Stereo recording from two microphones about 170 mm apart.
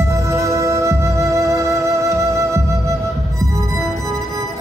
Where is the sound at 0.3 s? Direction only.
20° right (ahead or behind).